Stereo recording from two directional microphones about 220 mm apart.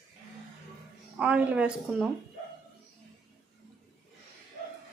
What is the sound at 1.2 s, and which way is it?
Speech, 5° right (ahead or behind).